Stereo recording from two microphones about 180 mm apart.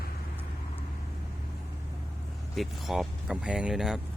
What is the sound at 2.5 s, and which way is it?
Speech, centre (ahead or behind).